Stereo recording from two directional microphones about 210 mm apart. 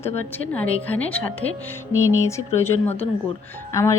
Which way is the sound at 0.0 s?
10° left (ahead or behind).